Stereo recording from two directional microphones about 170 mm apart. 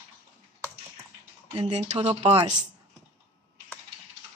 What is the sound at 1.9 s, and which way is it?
Speech, 35° right (ahead or behind).